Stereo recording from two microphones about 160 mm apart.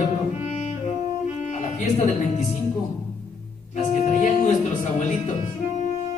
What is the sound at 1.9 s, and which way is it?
Speech, 45° left (ahead or behind).